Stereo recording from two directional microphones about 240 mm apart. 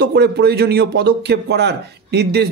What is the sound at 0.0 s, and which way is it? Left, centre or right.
Speech, right.